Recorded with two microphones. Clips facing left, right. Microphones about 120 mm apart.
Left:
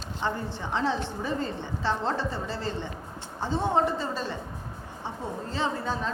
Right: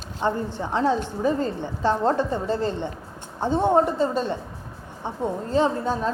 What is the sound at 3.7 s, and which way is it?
Speech, 45° right (ahead or behind).